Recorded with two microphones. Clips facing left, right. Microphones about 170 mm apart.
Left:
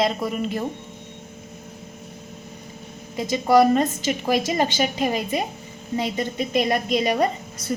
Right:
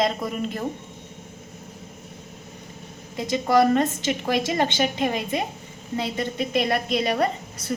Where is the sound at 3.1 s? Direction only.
10° left (ahead or behind).